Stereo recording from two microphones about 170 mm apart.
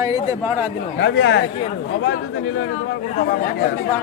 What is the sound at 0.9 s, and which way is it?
Speech, 90° left.